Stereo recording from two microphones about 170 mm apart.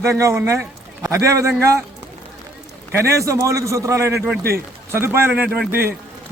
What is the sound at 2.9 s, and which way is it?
A man's voice, 15° right (ahead or behind).